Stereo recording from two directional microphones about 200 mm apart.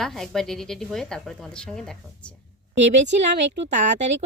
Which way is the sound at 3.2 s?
35° right (ahead or behind).